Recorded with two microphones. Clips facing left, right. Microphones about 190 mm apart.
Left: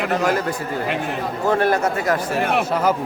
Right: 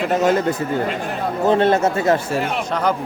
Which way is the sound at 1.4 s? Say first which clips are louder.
Right 3 dB; 25° right (ahead or behind).